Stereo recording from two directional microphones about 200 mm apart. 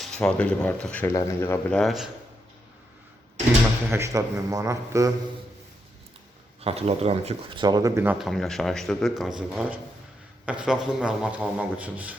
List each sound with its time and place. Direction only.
0.0 s speech: 5° left (ahead or behind)
1.1 s speech: 15° left (ahead or behind)
1.8 s speech: centre (ahead or behind)
3.8 s speech: 15° right (ahead or behind)
6.6 s speech: 30° right (ahead or behind); by 8.1 s 15° right (ahead or behind)
8.2 s speech: centre (ahead or behind)